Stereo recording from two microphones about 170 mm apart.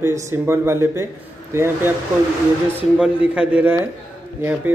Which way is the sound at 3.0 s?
5° right (ahead or behind).